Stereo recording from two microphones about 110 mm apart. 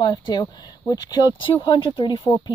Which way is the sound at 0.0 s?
45° left (ahead or behind).